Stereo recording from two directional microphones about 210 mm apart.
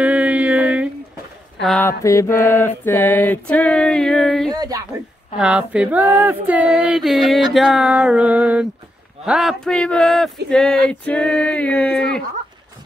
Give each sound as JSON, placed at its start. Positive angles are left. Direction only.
{"t": 0.0, "sound": "a sound", "side_deg": -5}
{"t": 1.6, "sound": "speech", "side_deg": 0}
{"t": 1.9, "sound": "mantra", "side_deg": 15}
{"t": 2.8, "sound": "speech", "side_deg": 10}
{"t": 4.5, "sound": "speech", "side_deg": -15}
{"t": 5.4, "sound": "speech", "side_deg": -5}